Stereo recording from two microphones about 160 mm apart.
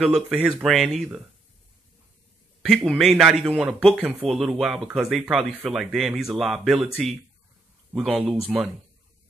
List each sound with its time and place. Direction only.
0.0 s speech: 5° right (ahead or behind)
2.7 s a man's voice: centre (ahead or behind)
7.9 s speech: centre (ahead or behind)